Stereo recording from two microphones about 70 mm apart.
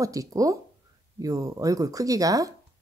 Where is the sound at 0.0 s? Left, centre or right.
Right.